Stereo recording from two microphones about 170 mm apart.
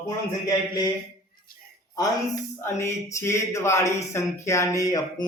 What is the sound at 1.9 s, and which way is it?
Speech, 20° left (ahead or behind).